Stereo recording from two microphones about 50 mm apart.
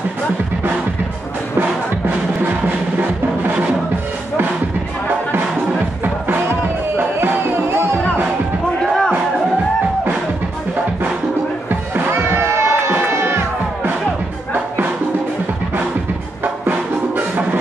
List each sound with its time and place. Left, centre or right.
1.6 s music: right
6.2 s music: right
7.2 s music: right
12.1 s a sound: right
12.9 s music: right